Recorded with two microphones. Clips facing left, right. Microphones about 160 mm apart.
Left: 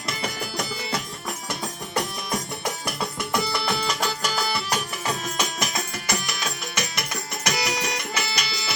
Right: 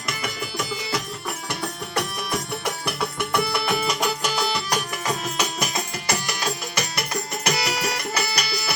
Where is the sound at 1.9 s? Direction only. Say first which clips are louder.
Even; 65° right (ahead or behind).